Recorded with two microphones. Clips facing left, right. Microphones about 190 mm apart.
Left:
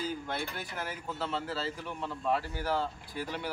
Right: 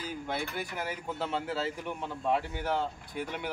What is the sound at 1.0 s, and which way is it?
Speech, 20° right (ahead or behind).